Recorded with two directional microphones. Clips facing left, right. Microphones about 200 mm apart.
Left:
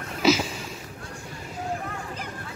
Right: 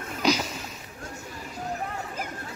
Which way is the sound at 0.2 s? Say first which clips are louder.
Left 4 dB; 5° left (ahead or behind).